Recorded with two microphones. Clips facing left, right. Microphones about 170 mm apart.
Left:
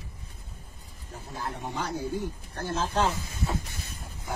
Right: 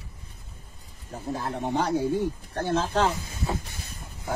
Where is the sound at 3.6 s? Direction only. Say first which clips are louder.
Even; 60° left (ahead or behind).